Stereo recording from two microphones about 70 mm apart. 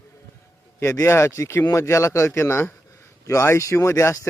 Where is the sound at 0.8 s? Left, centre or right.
Left.